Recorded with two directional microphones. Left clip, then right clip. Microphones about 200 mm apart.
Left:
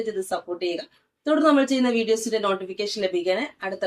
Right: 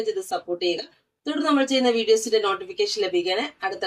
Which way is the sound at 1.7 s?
15° left (ahead or behind).